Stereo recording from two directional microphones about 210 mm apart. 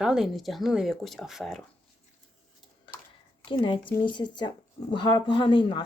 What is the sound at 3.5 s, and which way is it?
Speech, 25° left (ahead or behind).